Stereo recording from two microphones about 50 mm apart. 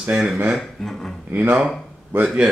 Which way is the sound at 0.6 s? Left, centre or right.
Centre.